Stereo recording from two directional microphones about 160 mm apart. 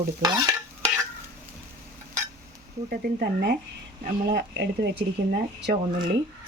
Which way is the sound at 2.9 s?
70° right (ahead or behind).